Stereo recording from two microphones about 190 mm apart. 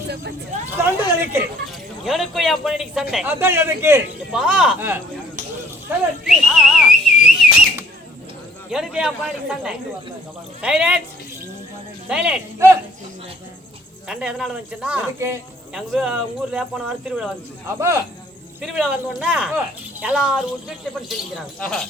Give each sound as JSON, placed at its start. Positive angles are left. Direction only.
{"t": 0.7, "sound": "a sound", "side_deg": -10}
{"t": 2.0, "sound": "a man's voice", "side_deg": 0}
{"t": 5.9, "sound": "whistle", "side_deg": 0}
{"t": 8.7, "sound": "speech", "side_deg": -5}
{"t": 10.6, "sound": "speech", "side_deg": -5}
{"t": 12.0, "sound": "speech", "side_deg": -5}
{"t": 14.1, "sound": "speech", "side_deg": -5}
{"t": 17.7, "sound": "a man's voice", "side_deg": -15}
{"t": 18.6, "sound": "speech", "side_deg": 0}